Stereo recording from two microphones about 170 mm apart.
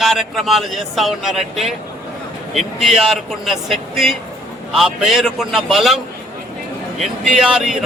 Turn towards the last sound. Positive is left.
turn(degrees=-5)  # may be behind; listen again after turning